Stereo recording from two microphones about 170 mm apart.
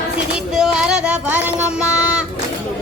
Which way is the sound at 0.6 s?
5° right (ahead or behind).